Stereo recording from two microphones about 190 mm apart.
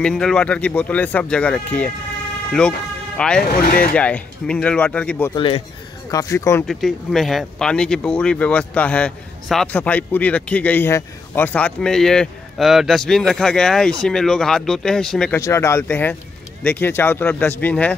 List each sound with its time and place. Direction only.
0.0 s speech: 5° left (ahead or behind)
3.2 s speech: 5° left (ahead or behind)
3.4 s speech: 50° left (ahead or behind)
3.9 s speech: 5° left (ahead or behind)
5.3 s a man's voice: 30° left (ahead or behind)
6.0 s speech: 15° left (ahead or behind)
6.7 s speech: centre (ahead or behind)
15.4 s speech: 15° left (ahead or behind)